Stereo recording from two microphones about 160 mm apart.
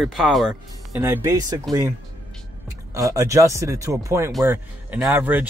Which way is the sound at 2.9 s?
20° right (ahead or behind).